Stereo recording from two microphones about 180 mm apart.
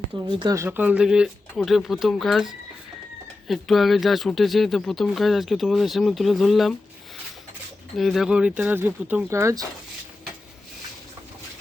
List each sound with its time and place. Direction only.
0.3 s speech: 25° right (ahead or behind)
0.5 s speech: 10° right (ahead or behind)
7.9 s speech: centre (ahead or behind); by 9.6 s 15° right (ahead or behind)